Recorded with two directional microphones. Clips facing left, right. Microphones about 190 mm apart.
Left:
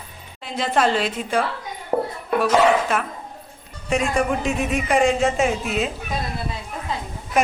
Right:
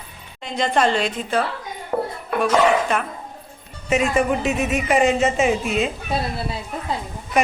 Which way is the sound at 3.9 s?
Centre (ahead or behind).